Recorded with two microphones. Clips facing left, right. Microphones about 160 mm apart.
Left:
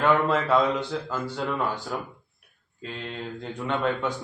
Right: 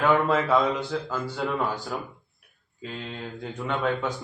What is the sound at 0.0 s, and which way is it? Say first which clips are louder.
A man's voice: even; 5° right (ahead or behind).